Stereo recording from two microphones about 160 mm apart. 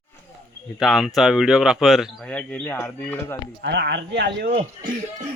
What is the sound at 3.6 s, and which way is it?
Speech, 90° right.